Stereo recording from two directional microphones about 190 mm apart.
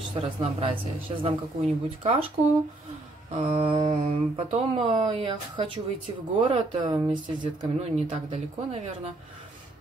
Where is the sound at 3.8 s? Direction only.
40° right (ahead or behind).